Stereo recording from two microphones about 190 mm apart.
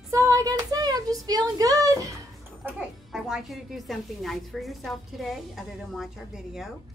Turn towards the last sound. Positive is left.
turn(degrees=0)  # may be behind; listen again after turning